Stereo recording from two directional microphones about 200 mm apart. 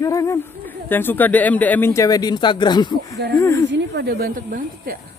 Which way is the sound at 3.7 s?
55° right (ahead or behind).